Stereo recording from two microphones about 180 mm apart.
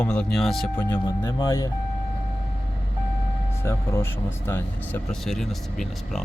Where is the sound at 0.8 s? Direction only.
10° left (ahead or behind).